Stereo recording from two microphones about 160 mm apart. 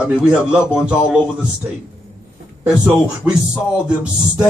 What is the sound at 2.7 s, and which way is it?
Speech, 5° right (ahead or behind).